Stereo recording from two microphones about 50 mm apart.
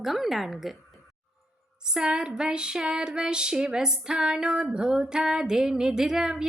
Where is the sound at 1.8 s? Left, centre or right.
Centre.